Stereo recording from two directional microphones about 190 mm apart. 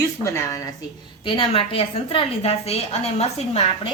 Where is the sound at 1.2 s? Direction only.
25° left (ahead or behind).